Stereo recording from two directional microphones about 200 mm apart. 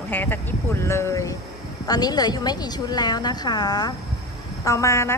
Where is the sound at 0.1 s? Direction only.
10° left (ahead or behind).